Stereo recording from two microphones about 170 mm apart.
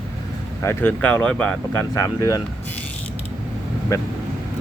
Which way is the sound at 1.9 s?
20° left (ahead or behind).